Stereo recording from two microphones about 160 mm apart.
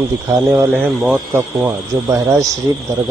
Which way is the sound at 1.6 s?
20° right (ahead or behind).